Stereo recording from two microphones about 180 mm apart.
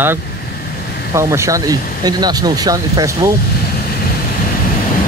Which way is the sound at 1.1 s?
15° right (ahead or behind).